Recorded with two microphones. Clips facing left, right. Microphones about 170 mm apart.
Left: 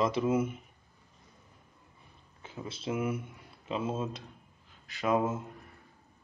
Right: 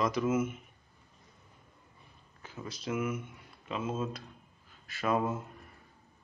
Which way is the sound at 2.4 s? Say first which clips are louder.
Left 2 dB; 25° left (ahead or behind).